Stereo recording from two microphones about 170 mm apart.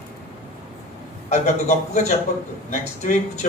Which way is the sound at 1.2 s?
45° left (ahead or behind).